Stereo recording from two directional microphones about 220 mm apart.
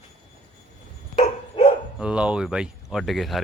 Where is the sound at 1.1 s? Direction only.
30° left (ahead or behind).